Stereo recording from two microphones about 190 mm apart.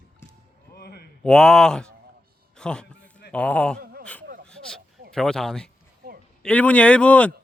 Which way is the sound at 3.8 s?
50° right (ahead or behind).